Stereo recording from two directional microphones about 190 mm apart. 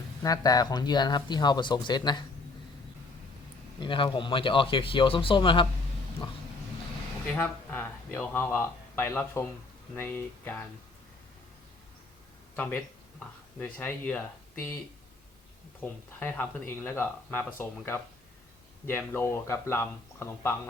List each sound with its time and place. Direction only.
0.2 s speech: 20° left (ahead or behind)
3.8 s speech: 25° left (ahead or behind)
7.3 s speech: 10° left (ahead or behind)
12.5 s speech: 10° left (ahead or behind)
15.8 s speech: 10° left (ahead or behind)